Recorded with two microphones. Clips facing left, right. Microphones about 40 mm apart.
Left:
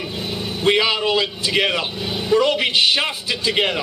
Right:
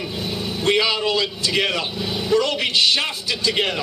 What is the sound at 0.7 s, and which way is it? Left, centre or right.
A man's voice, centre.